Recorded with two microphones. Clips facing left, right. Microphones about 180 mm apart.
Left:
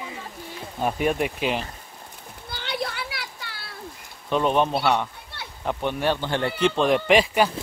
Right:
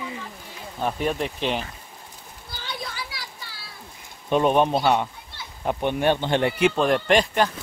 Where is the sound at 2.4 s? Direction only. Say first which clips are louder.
Left 5 dB; 65° left (ahead or behind).